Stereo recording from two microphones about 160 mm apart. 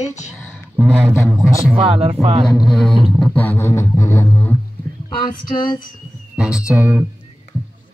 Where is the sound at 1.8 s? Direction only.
40° right (ahead or behind).